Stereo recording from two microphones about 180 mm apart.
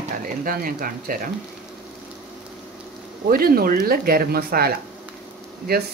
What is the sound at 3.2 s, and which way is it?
Speech, 55° right (ahead or behind).